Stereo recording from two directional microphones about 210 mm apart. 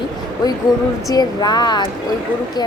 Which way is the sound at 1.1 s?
20° left (ahead or behind).